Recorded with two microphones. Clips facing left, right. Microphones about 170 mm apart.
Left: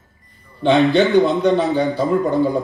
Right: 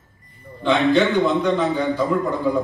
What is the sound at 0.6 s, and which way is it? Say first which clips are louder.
A man's voice: left 3 dB; 35° left (ahead or behind).